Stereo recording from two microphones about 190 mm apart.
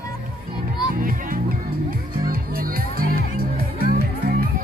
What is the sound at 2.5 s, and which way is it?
Music, 50° right (ahead or behind).